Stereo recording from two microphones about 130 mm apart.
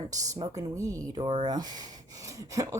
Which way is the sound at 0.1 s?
30° right (ahead or behind).